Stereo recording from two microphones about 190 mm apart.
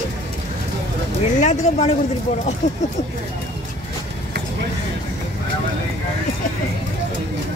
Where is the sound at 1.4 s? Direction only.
35° left (ahead or behind).